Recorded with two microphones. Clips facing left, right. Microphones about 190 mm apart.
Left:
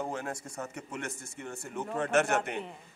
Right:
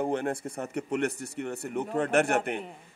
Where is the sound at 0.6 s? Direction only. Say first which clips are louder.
Right 9 dB; 65° right (ahead or behind).